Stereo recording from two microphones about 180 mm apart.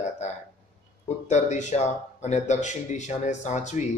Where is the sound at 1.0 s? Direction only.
40° left (ahead or behind).